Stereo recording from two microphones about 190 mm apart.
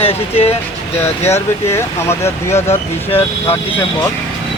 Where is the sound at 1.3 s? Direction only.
15° left (ahead or behind).